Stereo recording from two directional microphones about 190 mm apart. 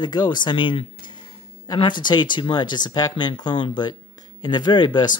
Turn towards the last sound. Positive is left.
turn(degrees=25)  # may be behind; listen again after turning